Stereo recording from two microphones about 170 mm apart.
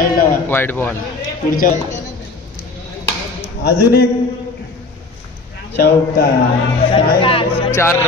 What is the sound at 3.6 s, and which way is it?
Speech, 75° left (ahead or behind).